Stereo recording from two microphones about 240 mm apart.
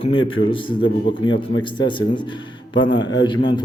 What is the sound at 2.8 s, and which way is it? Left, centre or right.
Speech, centre.